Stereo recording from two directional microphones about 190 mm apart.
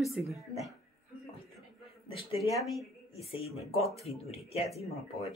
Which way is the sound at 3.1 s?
30° left (ahead or behind).